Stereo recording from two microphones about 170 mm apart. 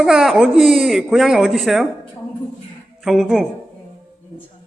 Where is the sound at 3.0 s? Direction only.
Centre (ahead or behind).